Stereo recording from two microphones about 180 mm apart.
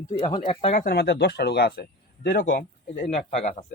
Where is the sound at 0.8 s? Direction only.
60° left (ahead or behind).